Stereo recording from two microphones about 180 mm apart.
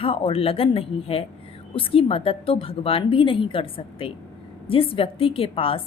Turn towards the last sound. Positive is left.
turn(degrees=30)  # may be behind; listen again after turning